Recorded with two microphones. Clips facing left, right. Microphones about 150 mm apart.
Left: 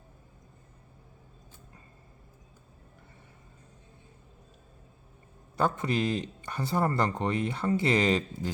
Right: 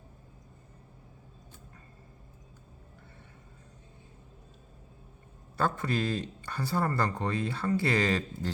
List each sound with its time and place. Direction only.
5.5 s speech: 20° left (ahead or behind)